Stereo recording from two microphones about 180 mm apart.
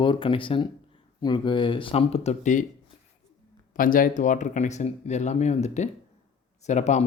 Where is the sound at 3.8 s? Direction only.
50° left (ahead or behind).